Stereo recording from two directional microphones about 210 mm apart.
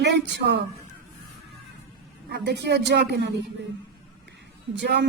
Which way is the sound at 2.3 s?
55° right (ahead or behind).